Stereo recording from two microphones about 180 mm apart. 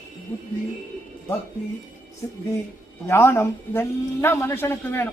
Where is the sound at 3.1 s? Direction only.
15° left (ahead or behind).